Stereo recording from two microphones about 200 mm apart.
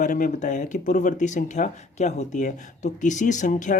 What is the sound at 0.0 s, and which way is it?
Speech, 40° left (ahead or behind).